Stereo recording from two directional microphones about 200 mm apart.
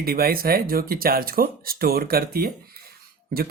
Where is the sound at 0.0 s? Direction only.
50° right (ahead or behind).